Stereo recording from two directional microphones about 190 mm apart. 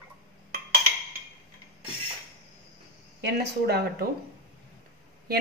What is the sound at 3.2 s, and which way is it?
Speech, 55° right (ahead or behind).